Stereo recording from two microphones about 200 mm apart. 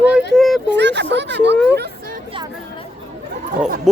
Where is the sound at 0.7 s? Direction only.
60° right (ahead or behind).